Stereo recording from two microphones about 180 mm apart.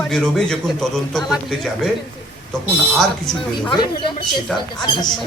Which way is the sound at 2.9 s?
Centre (ahead or behind).